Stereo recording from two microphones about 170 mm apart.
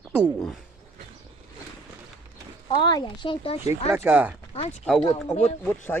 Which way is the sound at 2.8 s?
25° left (ahead or behind).